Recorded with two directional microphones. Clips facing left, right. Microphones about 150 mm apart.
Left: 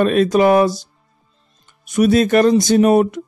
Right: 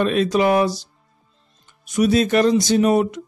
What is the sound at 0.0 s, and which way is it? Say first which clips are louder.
A man's voice: left 4 dB; 50° left (ahead or behind).